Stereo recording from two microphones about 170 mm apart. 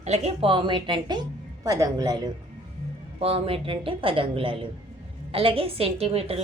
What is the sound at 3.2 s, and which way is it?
A woman's voice, 35° right (ahead or behind).